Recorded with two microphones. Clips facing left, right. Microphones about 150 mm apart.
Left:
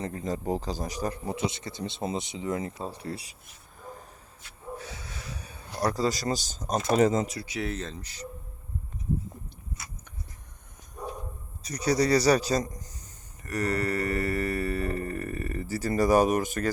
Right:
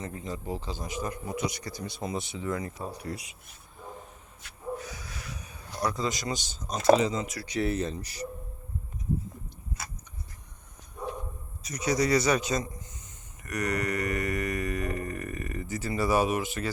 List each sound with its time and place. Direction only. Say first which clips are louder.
0.0 s a man's voice: left 5 dB; 40° left (ahead or behind)
4.8 s speech: even; 30° left (ahead or behind); by 7.3 s 45° left (ahead or behind)
7.4 s speech: right 4 dB; 5° left (ahead or behind)
7.7 s speech: right 5 dB; 10° right (ahead or behind)
11.6 s a sound: left 2 dB; 35° left (ahead or behind)